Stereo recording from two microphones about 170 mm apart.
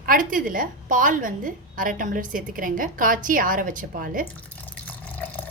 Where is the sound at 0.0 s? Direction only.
55° right (ahead or behind).